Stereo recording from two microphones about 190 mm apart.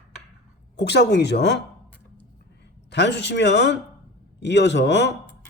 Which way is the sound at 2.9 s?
65° left (ahead or behind).